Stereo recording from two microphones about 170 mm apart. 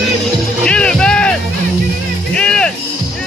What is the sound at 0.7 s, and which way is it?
Music, 5° left (ahead or behind).